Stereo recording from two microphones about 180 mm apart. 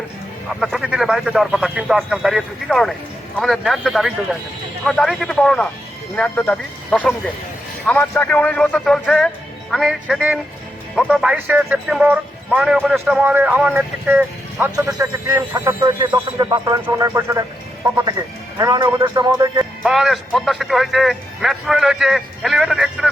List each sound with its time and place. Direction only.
0.6 s speech: centre (ahead or behind); by 19.6 s 20° right (ahead or behind)
19.8 s speech: centre (ahead or behind)